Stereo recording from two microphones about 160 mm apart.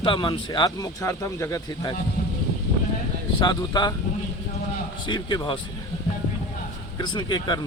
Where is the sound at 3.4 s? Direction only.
25° left (ahead or behind).